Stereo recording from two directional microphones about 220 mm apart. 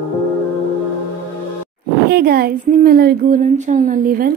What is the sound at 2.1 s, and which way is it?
A woman's voice, 45° right (ahead or behind).